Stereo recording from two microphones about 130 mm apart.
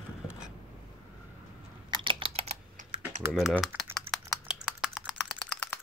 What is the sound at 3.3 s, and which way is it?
Speech, centre (ahead or behind).